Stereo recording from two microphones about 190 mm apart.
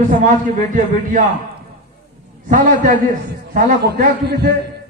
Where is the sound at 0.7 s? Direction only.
40° right (ahead or behind).